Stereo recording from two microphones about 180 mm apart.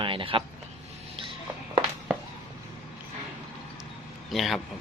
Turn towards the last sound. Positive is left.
turn(degrees=0)  # may be behind; listen again after turning